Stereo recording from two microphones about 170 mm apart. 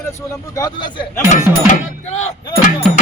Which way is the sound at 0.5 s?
25° left (ahead or behind).